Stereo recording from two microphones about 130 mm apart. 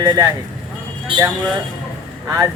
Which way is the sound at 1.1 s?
40° right (ahead or behind).